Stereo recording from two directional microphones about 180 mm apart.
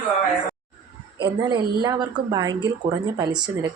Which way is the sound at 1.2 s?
25° right (ahead or behind).